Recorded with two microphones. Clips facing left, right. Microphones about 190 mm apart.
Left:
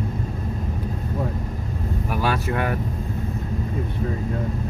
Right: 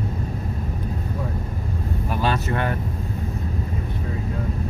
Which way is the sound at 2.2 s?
5° left (ahead or behind).